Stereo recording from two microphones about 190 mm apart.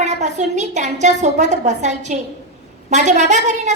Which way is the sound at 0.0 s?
40° right (ahead or behind).